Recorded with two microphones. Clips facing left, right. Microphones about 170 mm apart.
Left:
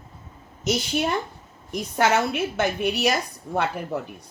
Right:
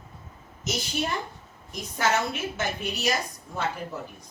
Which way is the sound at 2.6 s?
60° left (ahead or behind).